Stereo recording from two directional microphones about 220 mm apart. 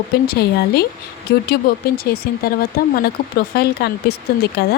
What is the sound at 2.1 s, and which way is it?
Speech, 45° left (ahead or behind).